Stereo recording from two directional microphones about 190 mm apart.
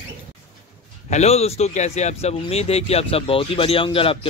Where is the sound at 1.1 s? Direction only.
35° left (ahead or behind).